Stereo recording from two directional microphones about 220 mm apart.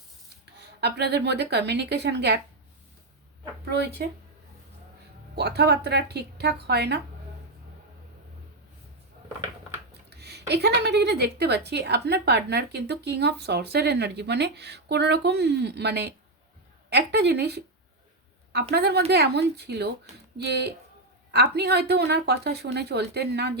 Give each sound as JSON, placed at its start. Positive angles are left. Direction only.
{"t": 0.8, "sound": "a woman's voice", "side_deg": -50}
{"t": 3.7, "sound": "a woman's voice", "side_deg": -50}
{"t": 5.3, "sound": "a woman's voice", "side_deg": -50}
{"t": 10.1, "sound": "a woman's voice", "side_deg": -50}